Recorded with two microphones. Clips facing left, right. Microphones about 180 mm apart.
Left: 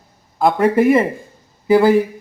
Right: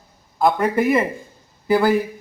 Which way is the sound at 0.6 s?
30° left (ahead or behind).